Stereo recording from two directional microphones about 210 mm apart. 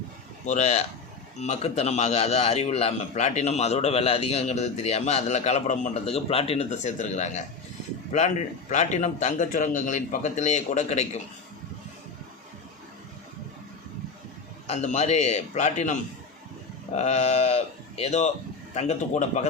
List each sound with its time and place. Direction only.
0.4 s a man's voice: 35° left (ahead or behind)
14.7 s a man's voice: 30° left (ahead or behind)